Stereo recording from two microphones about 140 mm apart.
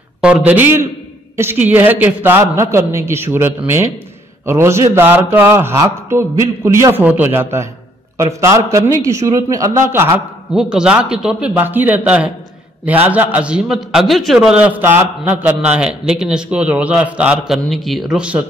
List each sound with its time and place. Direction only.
0.2 s a man's voice: 10° right (ahead or behind)
10.5 s a man's voice: 5° right (ahead or behind)